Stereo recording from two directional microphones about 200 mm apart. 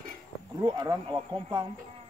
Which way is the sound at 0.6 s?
20° right (ahead or behind).